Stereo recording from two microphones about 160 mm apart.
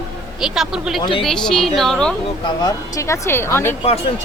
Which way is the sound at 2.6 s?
20° left (ahead or behind).